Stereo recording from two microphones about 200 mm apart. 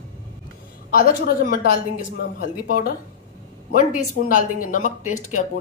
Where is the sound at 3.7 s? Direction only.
40° left (ahead or behind).